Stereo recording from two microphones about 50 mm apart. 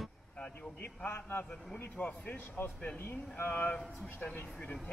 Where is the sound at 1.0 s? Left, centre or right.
Left.